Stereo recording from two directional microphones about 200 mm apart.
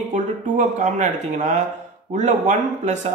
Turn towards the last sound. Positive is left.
turn(degrees=-35)  # may be behind; listen again after turning